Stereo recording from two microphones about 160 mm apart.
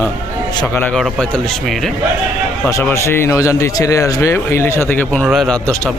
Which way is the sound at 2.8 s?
15° left (ahead or behind).